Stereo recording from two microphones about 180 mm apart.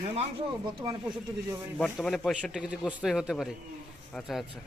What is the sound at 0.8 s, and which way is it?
Speech, 25° right (ahead or behind).